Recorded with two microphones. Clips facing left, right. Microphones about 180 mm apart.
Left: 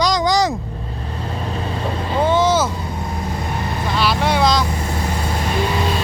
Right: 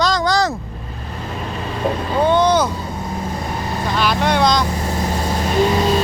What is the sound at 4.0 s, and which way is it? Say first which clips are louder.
Speech: right 1 dB; 5° left (ahead or behind).